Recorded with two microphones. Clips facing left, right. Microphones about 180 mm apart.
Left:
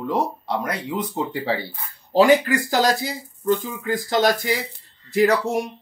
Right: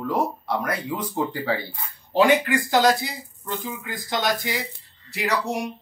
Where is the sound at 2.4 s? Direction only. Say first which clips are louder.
Even; 40° left (ahead or behind).